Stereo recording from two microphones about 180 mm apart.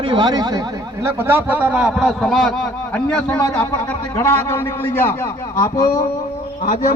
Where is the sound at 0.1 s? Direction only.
25° right (ahead or behind).